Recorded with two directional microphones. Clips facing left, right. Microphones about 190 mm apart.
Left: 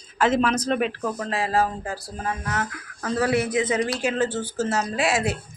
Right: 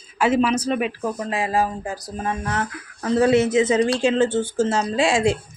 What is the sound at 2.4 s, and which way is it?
Speech, 30° right (ahead or behind).